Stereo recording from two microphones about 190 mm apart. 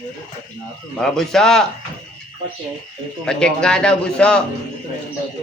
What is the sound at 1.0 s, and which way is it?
Speech, 5° left (ahead or behind).